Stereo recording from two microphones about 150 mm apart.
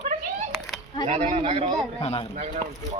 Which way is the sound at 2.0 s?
45° left (ahead or behind).